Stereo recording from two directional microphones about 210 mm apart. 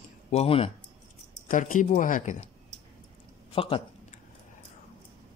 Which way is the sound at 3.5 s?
25° left (ahead or behind).